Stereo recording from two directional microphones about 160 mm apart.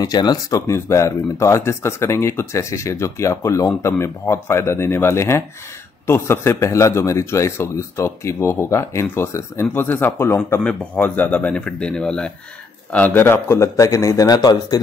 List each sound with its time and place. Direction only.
0.0 s a man's voice: 25° left (ahead or behind)